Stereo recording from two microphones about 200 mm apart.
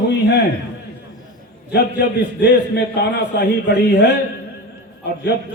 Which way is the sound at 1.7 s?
55° left (ahead or behind).